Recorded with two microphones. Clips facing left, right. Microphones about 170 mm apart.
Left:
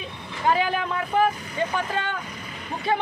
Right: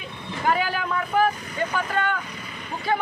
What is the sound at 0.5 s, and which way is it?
Speech, 25° left (ahead or behind).